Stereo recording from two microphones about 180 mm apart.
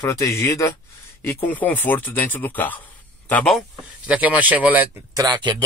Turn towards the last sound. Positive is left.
turn(degrees=-25)  # may be behind; listen again after turning